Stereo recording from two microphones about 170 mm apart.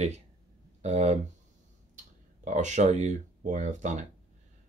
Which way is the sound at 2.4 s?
45° right (ahead or behind).